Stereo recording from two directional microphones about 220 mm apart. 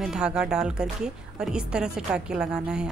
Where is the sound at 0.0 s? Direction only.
5° right (ahead or behind).